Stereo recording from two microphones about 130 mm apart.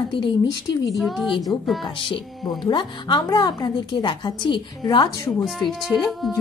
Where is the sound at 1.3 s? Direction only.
30° left (ahead or behind).